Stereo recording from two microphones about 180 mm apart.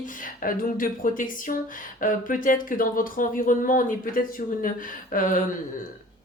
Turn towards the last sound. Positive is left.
turn(degrees=50)  # may be behind; listen again after turning